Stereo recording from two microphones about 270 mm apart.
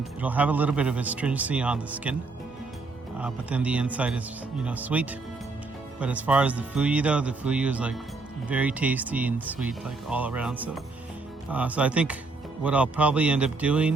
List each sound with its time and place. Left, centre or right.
0.2 s speech: centre
3.2 s speech: centre